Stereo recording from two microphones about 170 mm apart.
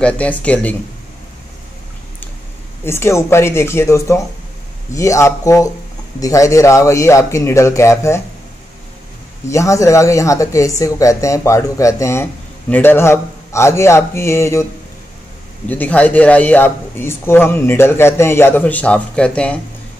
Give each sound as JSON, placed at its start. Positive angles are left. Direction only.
{"t": 0.0, "sound": "speech", "side_deg": 5}
{"t": 2.8, "sound": "speech", "side_deg": 15}
{"t": 9.5, "sound": "speech", "side_deg": 20}
{"t": 15.7, "sound": "speech", "side_deg": 10}